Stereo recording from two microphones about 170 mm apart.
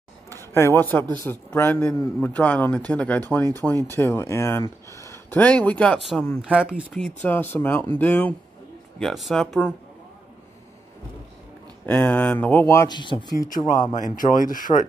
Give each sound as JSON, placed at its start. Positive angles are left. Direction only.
{"t": 0.3, "sound": "speech", "side_deg": 15}
{"t": 7.2, "sound": "speech", "side_deg": 10}
{"t": 11.8, "sound": "speech", "side_deg": 10}
{"t": 13.9, "sound": "speech", "side_deg": 50}